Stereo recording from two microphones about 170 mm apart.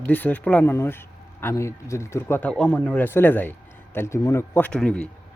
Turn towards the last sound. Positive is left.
turn(degrees=5)  # may be behind; listen again after turning